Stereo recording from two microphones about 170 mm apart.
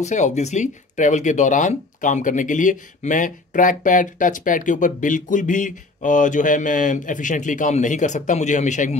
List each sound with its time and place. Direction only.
0.0 s speech: 45° left (ahead or behind)